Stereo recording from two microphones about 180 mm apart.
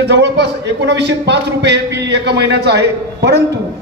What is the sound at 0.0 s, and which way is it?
A man's voice, 70° right (ahead or behind).